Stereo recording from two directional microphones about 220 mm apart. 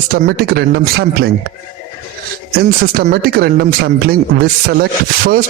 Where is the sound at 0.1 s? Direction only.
45° right (ahead or behind).